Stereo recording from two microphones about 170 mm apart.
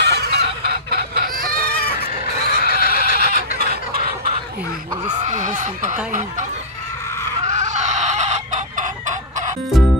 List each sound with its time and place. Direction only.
0.0 s fowl: 80° right
2.6 s neigh: 65° left (ahead or behind)
5.2 s speech: 45° right (ahead or behind)
7.4 s chicken: 45° right (ahead or behind)